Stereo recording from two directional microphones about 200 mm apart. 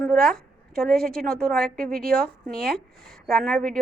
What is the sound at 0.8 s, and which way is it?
A woman's voice, centre (ahead or behind).